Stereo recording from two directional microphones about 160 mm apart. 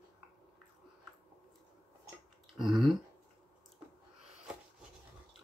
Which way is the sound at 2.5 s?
Centre (ahead or behind).